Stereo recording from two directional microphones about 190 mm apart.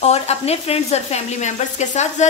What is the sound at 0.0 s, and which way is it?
Speech, 35° left (ahead or behind).